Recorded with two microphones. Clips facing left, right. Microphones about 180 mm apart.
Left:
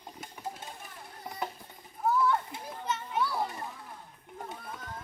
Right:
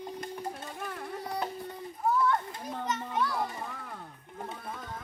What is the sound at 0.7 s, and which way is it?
Carnatic music, 75° right (ahead or behind).